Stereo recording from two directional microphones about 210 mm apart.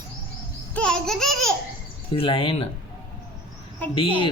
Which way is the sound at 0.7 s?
5° left (ahead or behind).